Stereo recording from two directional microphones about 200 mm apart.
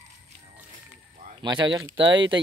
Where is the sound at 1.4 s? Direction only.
25° right (ahead or behind).